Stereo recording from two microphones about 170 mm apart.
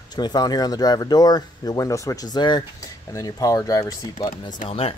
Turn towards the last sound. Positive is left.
turn(degrees=35)  # may be behind; listen again after turning